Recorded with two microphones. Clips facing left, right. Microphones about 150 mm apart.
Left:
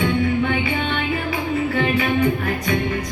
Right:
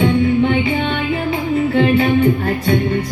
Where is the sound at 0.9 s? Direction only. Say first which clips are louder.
Right 4 dB; 25° right (ahead or behind).